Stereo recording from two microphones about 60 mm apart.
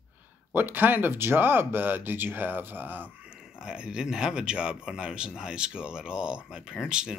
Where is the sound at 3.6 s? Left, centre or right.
Centre.